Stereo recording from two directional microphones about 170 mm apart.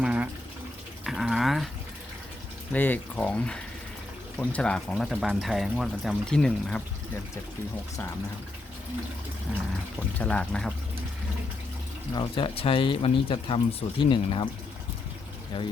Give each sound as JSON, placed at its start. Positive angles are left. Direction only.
{"t": 0.0, "sound": "water", "side_deg": -10}
{"t": 1.0, "sound": "a sound", "side_deg": 0}
{"t": 2.7, "sound": "speech", "side_deg": 10}
{"t": 10.2, "sound": "speech", "side_deg": 5}
{"t": 12.1, "sound": "speech", "side_deg": 30}
{"t": 15.5, "sound": "speech", "side_deg": 35}